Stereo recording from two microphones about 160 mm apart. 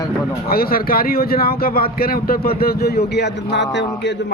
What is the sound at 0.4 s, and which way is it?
Speech, 70° left (ahead or behind).